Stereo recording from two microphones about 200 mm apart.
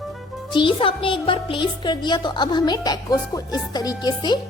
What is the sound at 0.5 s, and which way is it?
Speech, 25° left (ahead or behind).